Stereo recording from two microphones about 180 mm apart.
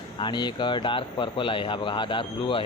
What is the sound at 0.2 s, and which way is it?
Speech, 25° left (ahead or behind).